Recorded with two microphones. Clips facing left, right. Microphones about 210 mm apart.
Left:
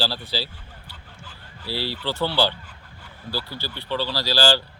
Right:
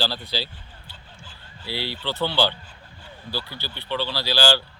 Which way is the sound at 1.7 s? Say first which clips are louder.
Left 2 dB; 40° left (ahead or behind).